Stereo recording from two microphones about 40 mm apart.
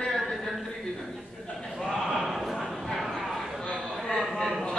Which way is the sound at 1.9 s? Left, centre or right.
Centre.